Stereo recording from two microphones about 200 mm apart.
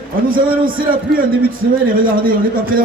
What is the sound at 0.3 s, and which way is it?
Speech, 45° right (ahead or behind).